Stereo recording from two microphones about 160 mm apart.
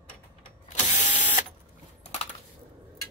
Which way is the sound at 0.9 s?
50° left (ahead or behind).